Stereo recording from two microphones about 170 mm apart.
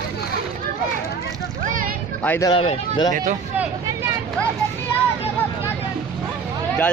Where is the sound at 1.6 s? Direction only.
55° right (ahead or behind).